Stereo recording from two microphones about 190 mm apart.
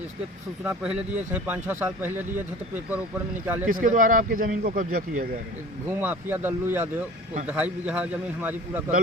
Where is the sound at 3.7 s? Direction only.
45° right (ahead or behind).